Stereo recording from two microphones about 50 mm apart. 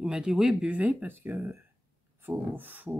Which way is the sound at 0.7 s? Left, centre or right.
Right.